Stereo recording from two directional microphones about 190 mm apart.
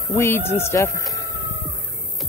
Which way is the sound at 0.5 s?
15° left (ahead or behind).